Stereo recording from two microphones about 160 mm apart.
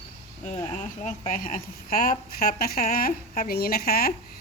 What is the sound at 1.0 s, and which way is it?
A woman's voice, 55° left (ahead or behind).